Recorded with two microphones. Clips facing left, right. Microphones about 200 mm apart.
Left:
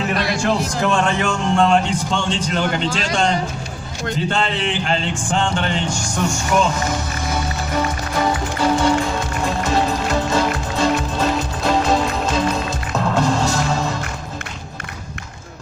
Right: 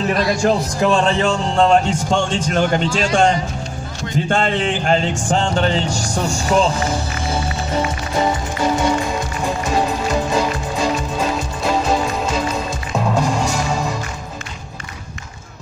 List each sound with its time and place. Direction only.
0.4 s a man's voice: 35° right (ahead or behind)
9.6 s music: 10° right (ahead or behind)